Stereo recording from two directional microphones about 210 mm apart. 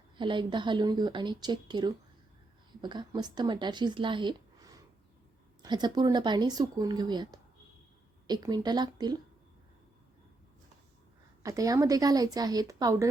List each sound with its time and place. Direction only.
0.2 s speech: 20° right (ahead or behind)
11.4 s speech: 15° right (ahead or behind)